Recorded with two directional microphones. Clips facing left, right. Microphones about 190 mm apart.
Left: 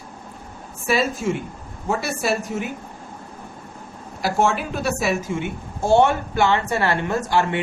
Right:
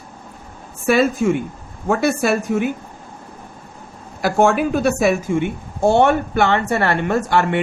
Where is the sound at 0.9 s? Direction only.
55° right (ahead or behind).